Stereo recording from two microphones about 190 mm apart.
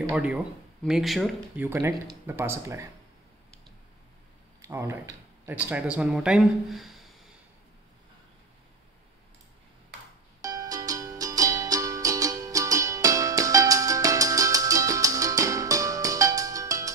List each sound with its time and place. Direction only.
0.1 s speech: 5° right (ahead or behind)
1.6 s speech: 10° right (ahead or behind)
4.6 s speech: 15° right (ahead or behind)
10.4 s music: 20° right (ahead or behind)